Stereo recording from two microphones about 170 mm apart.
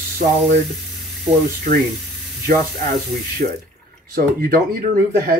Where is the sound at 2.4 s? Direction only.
60° right (ahead or behind).